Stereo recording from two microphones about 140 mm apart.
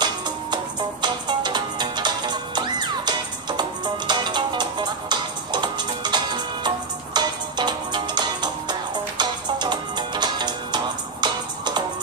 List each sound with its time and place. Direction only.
0.0 s music: 30° right (ahead or behind)